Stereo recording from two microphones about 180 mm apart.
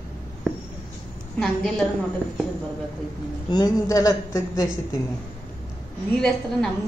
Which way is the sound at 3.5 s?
20° left (ahead or behind).